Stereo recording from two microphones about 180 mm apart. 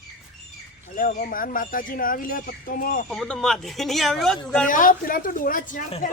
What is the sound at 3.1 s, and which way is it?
Speech, centre (ahead or behind).